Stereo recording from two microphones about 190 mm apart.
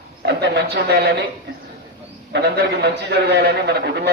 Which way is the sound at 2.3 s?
60° right (ahead or behind).